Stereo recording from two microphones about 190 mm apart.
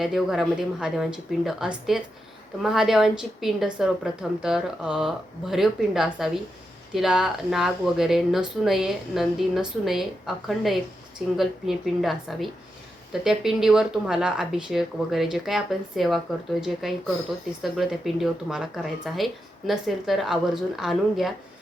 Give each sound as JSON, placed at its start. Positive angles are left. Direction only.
{"t": 0.0, "sound": "speech", "side_deg": 0}